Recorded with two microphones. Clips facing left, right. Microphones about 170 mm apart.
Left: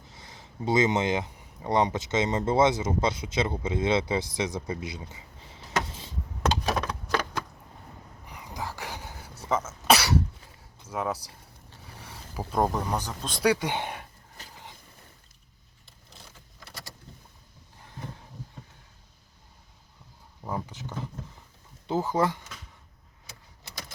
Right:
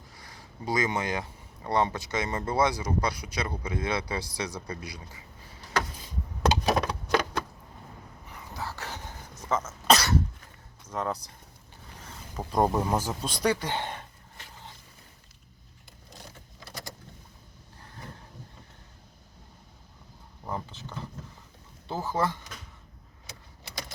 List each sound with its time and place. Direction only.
0.1 s speech: 25° left (ahead or behind)
6.7 s a sound: 10° right (ahead or behind)
8.3 s cough: 15° left (ahead or behind)
10.8 s speech: 10° left (ahead or behind)
11.9 s a sound: 10° left (ahead or behind)
12.5 s speech: 5° right (ahead or behind)
13.4 s speech: 15° left (ahead or behind)
20.5 s a sound: 15° left (ahead or behind)
21.8 s speech: 15° left (ahead or behind)